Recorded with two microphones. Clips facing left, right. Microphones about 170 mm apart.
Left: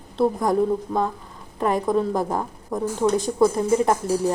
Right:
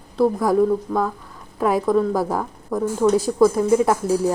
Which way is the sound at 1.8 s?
20° left (ahead or behind).